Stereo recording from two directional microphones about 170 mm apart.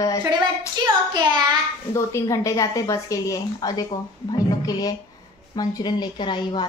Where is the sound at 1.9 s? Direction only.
15° left (ahead or behind).